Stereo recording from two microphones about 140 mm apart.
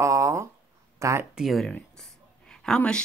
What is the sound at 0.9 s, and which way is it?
Speech, 20° right (ahead or behind).